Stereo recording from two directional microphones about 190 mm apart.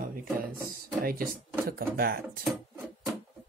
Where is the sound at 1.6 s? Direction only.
50° right (ahead or behind).